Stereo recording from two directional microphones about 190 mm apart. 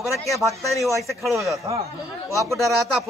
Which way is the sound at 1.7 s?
20° right (ahead or behind).